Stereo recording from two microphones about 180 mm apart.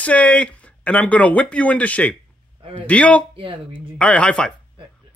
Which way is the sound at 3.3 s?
25° right (ahead or behind).